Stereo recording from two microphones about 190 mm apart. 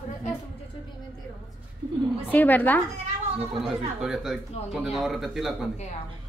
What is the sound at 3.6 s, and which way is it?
A woman's voice, centre (ahead or behind).